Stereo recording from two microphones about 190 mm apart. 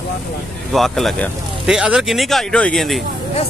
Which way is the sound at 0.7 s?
Centre (ahead or behind).